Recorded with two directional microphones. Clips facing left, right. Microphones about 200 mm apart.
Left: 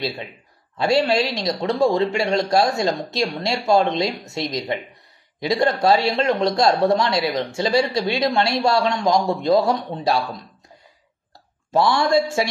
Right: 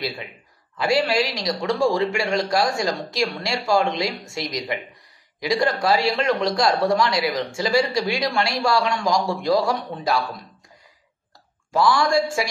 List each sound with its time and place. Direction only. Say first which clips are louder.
0.7 s speech: left 2 dB; 25° left (ahead or behind)
11.7 s speech: left 1 dB; 25° left (ahead or behind)